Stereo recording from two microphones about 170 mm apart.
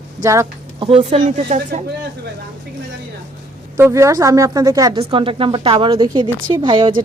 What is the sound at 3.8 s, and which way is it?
A woman's voice, 15° right (ahead or behind).